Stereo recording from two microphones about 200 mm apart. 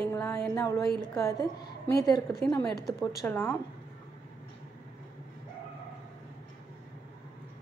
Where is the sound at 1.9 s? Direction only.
15° left (ahead or behind).